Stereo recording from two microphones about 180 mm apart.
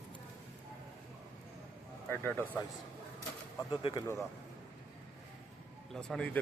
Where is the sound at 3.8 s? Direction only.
30° left (ahead or behind).